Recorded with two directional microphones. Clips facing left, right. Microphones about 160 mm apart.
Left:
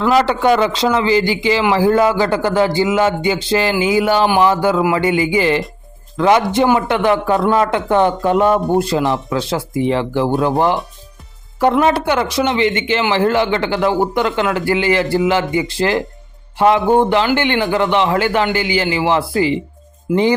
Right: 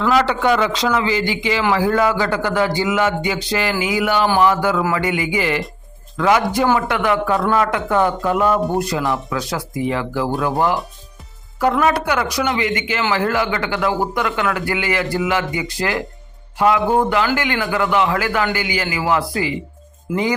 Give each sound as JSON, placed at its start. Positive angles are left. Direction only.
{"t": 0.1, "sound": "a man's voice", "side_deg": 30}